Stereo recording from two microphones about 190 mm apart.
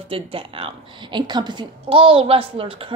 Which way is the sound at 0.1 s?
30° right (ahead or behind).